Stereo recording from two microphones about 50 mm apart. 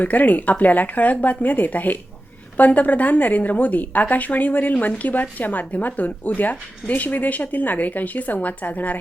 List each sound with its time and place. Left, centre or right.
0.0 s a woman's voice: left